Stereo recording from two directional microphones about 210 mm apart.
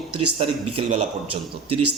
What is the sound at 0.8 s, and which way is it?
Speech, 30° right (ahead or behind).